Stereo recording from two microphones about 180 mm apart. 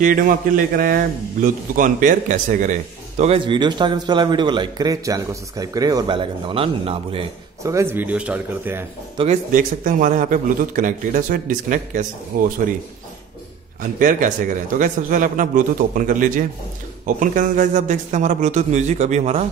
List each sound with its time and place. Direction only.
0.7 s speech: 50° right (ahead or behind); by 7.2 s 30° right (ahead or behind)
7.6 s a man's voice: 15° right (ahead or behind)
9.2 s a man's voice: 40° right (ahead or behind)
13.9 s a man's voice: 45° right (ahead or behind)